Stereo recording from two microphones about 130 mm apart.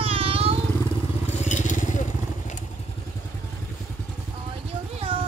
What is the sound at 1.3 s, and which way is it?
Crushing, 65° left (ahead or behind).